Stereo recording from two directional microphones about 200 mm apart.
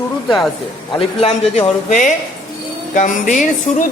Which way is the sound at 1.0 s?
30° left (ahead or behind).